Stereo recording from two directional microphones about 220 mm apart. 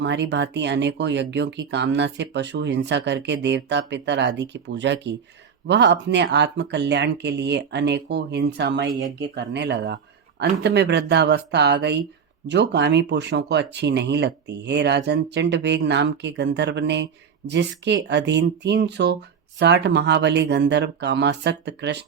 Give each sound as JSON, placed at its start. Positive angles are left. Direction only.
{"t": 0.0, "sound": "speech", "side_deg": -50}